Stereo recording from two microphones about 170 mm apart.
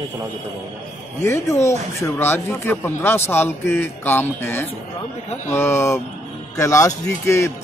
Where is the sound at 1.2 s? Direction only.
15° left (ahead or behind).